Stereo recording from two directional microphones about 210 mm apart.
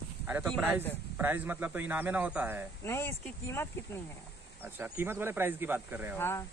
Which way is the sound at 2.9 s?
10° left (ahead or behind).